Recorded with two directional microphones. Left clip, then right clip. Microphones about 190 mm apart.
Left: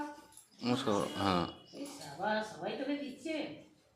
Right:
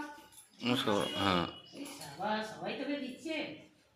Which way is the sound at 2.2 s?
35° right (ahead or behind).